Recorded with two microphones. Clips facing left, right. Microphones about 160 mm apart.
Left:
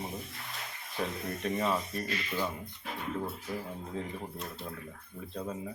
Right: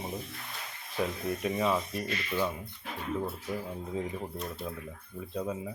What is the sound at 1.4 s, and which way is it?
Speech, 10° right (ahead or behind).